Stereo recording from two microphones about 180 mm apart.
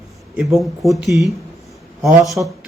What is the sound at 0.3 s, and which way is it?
Speech, centre (ahead or behind).